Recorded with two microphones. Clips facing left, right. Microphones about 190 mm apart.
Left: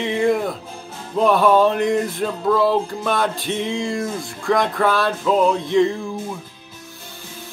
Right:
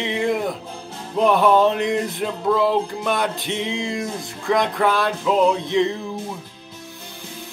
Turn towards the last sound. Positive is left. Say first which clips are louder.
# left 2 dB
turn(degrees=-20)  # may be behind; listen again after turning